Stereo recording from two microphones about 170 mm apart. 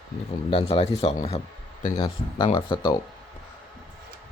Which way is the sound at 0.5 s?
35° left (ahead or behind).